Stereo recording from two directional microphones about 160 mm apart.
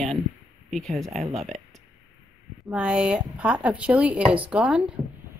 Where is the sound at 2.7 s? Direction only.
5° right (ahead or behind).